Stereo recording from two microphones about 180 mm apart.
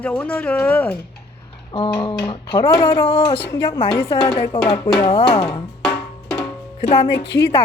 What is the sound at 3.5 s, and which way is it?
Speech, 15° left (ahead or behind).